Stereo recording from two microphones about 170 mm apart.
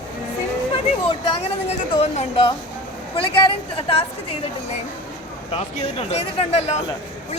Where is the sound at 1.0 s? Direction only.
35° left (ahead or behind).